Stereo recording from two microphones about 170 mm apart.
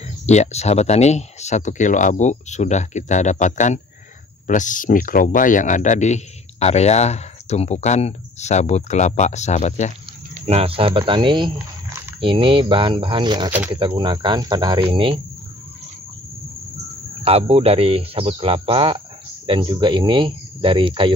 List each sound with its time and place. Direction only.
0.3 s speech: 40° left (ahead or behind)
10.3 s speech: 35° right (ahead or behind)
17.2 s speech: 35° right (ahead or behind)